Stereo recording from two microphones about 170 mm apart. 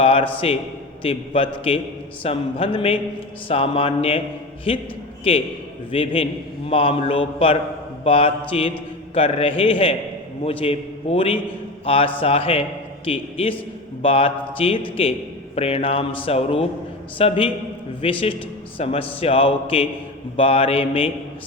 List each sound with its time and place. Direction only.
0.0 s speech: 30° left (ahead or behind)